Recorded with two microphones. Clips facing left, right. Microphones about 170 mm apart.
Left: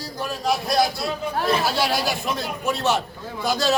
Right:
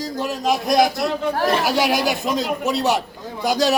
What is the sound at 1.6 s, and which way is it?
A man's voice, 15° right (ahead or behind).